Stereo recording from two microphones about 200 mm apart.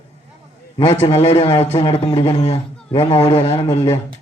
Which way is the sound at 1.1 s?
30° left (ahead or behind).